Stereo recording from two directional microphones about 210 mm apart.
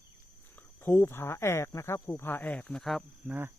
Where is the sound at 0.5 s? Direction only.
10° left (ahead or behind).